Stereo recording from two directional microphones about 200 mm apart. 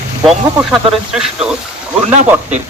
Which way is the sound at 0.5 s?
5° right (ahead or behind).